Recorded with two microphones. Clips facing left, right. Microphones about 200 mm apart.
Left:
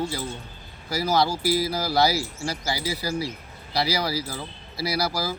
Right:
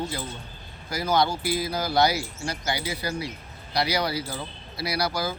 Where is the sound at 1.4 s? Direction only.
20° right (ahead or behind).